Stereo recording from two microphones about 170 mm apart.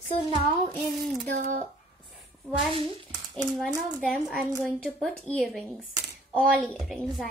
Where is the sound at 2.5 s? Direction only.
30° right (ahead or behind).